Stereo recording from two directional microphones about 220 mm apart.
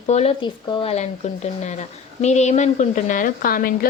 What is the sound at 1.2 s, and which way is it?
Speech, 30° left (ahead or behind).